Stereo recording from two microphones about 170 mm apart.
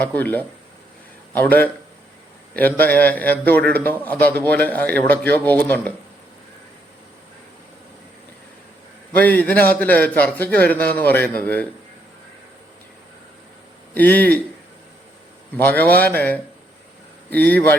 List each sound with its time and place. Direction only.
0.0 s a man's voice: 10° left (ahead or behind)
9.1 s a man's voice: 10° left (ahead or behind)
13.9 s speech: 10° left (ahead or behind)
15.5 s a man's voice: 10° left (ahead or behind)